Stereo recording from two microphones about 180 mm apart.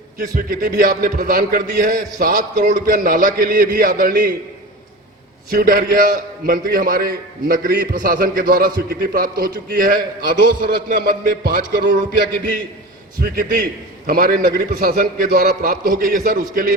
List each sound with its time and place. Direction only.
0.3 s a man's voice: 50° right (ahead or behind)
5.5 s a man's voice: 55° right (ahead or behind)
13.3 s a man's voice: 50° right (ahead or behind)